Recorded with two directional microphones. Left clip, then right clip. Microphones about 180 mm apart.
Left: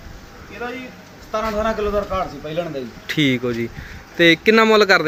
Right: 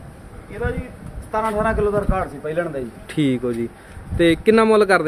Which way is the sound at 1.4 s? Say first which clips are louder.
Right 2 dB; 5° right (ahead or behind).